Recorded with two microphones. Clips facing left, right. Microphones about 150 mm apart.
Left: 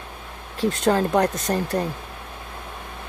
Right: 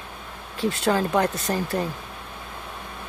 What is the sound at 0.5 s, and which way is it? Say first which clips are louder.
Speech: left 2 dB; 40° left (ahead or behind).